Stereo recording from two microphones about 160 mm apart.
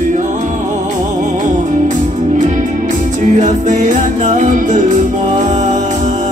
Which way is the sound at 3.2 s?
50° right (ahead or behind).